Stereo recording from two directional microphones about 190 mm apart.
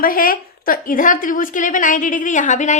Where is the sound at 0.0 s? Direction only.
50° left (ahead or behind).